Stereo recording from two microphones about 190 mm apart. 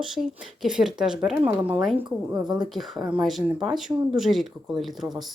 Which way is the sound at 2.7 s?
Centre (ahead or behind).